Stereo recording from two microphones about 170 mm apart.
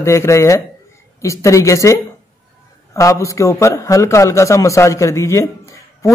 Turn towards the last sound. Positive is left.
turn(degrees=15)  # may be behind; listen again after turning